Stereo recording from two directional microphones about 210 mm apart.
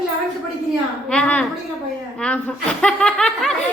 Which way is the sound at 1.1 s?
5° left (ahead or behind).